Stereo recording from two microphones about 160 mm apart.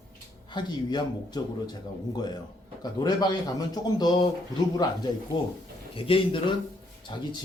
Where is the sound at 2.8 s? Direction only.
25° left (ahead or behind).